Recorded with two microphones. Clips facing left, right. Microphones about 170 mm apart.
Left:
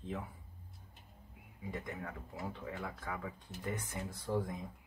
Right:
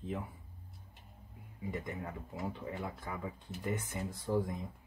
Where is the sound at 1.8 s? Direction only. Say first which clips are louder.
Right 2 dB; 20° right (ahead or behind).